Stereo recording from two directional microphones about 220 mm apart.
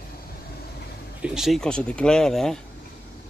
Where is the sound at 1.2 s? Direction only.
Centre (ahead or behind).